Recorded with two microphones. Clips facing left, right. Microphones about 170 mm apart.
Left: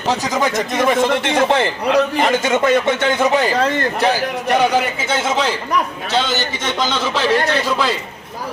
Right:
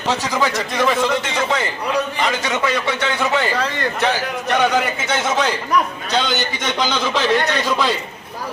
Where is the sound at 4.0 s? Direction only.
35° left (ahead or behind).